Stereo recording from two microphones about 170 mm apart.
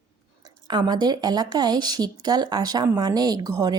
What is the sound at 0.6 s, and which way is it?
Speech, 25° right (ahead or behind).